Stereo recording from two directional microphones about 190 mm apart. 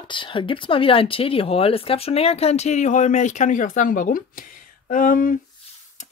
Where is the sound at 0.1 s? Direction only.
25° left (ahead or behind); by 5.4 s 45° left (ahead or behind).